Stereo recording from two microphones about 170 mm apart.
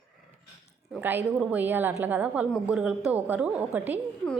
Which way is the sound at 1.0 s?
10° right (ahead or behind).